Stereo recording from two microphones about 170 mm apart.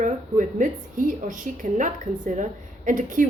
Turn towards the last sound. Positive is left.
turn(degrees=-50)  # may be behind; listen again after turning